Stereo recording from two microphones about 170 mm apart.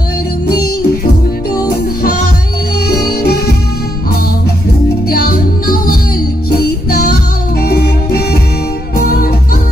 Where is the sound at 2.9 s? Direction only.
65° left (ahead or behind).